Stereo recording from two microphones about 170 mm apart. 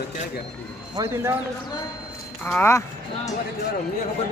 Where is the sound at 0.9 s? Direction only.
15° right (ahead or behind).